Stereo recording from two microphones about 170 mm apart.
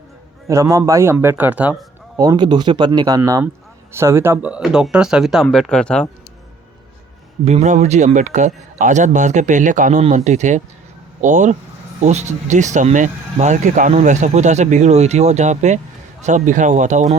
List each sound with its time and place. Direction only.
0.4 s a man's voice: 20° right (ahead or behind)
2.1 s speech: 25° right (ahead or behind); by 6.1 s 5° left (ahead or behind)
7.4 s speech: 40° right (ahead or behind)